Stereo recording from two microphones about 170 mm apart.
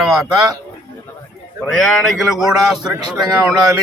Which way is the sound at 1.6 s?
5° left (ahead or behind).